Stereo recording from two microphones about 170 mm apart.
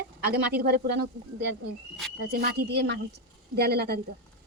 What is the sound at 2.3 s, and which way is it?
A woman's voice, 60° right (ahead or behind).